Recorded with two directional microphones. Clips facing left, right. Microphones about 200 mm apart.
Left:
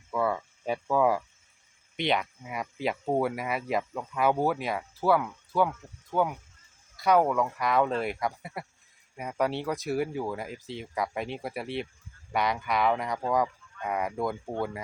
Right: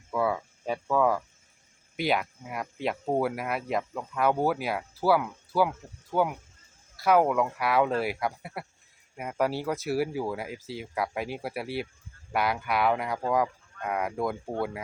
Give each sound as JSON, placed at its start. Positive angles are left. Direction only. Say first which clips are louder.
{"t": 0.1, "sound": "cricket", "louder": "right 1 dB", "side_deg": -5}
{"t": 2.0, "sound": "speech", "louder": "right 1 dB", "side_deg": -5}